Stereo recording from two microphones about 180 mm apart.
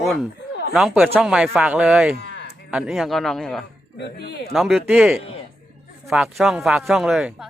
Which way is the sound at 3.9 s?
65° left (ahead or behind).